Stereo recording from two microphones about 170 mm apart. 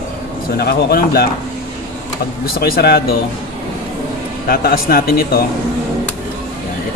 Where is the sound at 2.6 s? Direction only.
65° left (ahead or behind).